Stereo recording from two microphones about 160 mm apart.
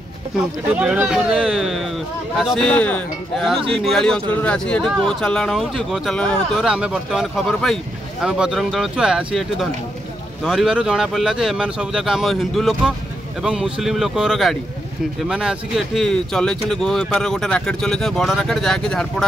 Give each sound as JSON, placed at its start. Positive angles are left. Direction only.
{"t": 0.7, "sound": "speech", "side_deg": -5}
{"t": 3.5, "sound": "speech", "side_deg": -35}
{"t": 3.9, "sound": "speech", "side_deg": 5}